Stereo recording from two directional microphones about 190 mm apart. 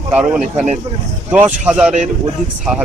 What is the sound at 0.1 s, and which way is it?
Speech, 10° right (ahead or behind).